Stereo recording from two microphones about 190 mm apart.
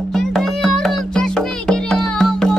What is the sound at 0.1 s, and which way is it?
Music, centre (ahead or behind).